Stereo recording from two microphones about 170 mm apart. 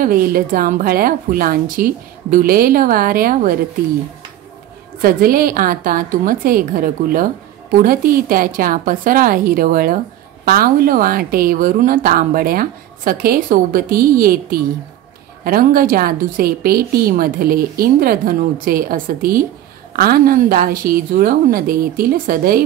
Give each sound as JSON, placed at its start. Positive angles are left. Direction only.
{"t": 0.0, "sound": "a woman's voice", "side_deg": -55}
{"t": 5.0, "sound": "a woman's voice", "side_deg": -60}